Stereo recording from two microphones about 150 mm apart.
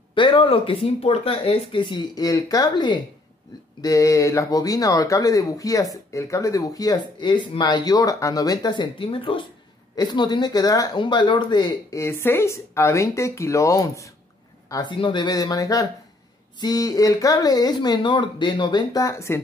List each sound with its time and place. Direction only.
0.1 s speech: 35° left (ahead or behind)
12.0 s speech: 15° left (ahead or behind)